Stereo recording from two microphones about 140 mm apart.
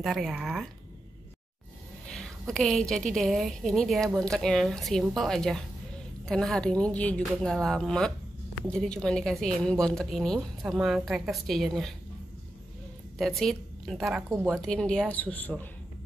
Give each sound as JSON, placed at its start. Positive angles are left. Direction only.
{"t": 0.0, "sound": "a woman's voice", "side_deg": 0}
{"t": 2.0, "sound": "a woman's voice", "side_deg": 5}
{"t": 13.2, "sound": "a woman's voice", "side_deg": 0}
{"t": 14.3, "sound": "a woman's voice", "side_deg": -20}
{"t": 14.6, "sound": "a woman's voice", "side_deg": 5}